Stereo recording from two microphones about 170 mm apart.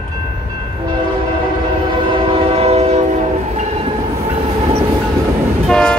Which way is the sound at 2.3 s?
35° right (ahead or behind).